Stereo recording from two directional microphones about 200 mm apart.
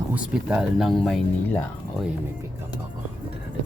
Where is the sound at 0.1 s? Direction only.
5° right (ahead or behind).